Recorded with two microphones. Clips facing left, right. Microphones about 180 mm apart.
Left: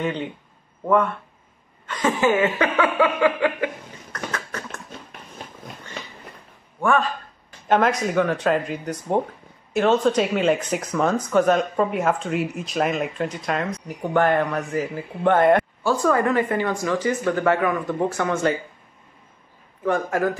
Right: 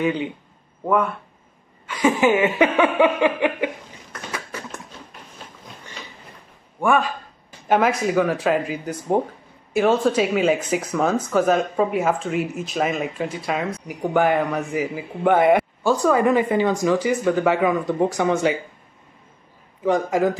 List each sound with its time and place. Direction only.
0.8 s speech: 5° right (ahead or behind)
4.1 s a sound: 10° right (ahead or behind)
6.8 s speech: 10° right (ahead or behind)
19.8 s speech: 15° right (ahead or behind)